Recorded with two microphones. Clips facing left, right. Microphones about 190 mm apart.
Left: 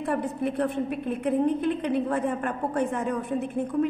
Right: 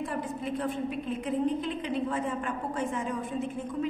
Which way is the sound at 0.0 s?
60° left (ahead or behind).